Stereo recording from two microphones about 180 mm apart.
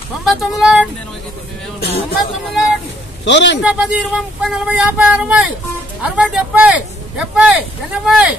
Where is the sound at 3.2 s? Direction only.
80° left.